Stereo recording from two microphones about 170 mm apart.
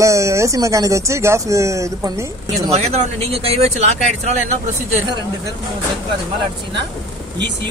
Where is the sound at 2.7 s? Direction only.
40° right (ahead or behind).